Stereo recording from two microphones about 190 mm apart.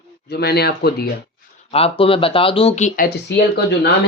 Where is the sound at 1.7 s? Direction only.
30° left (ahead or behind).